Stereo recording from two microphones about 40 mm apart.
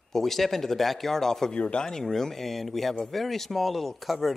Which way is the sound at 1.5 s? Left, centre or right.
Left.